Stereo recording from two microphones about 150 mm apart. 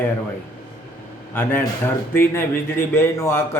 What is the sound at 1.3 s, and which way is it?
A man's voice, 15° left (ahead or behind).